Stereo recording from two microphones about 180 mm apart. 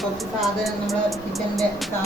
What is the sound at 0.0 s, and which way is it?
Speech, centre (ahead or behind).